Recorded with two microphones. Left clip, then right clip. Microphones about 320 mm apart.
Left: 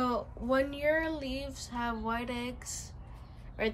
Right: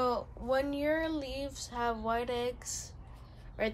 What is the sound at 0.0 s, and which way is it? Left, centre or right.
Speech, centre.